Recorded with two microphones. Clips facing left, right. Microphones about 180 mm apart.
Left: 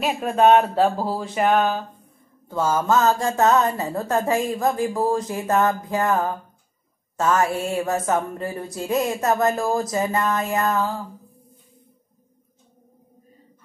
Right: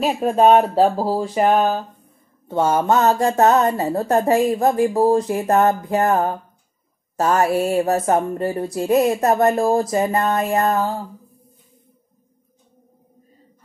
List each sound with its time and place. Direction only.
0.0 s speech: 35° right (ahead or behind)